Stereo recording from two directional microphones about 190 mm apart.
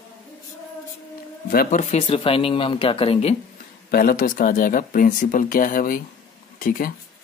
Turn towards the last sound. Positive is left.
turn(degrees=45)  # may be behind; listen again after turning